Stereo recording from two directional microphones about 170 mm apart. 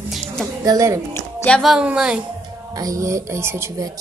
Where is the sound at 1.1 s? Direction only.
15° left (ahead or behind).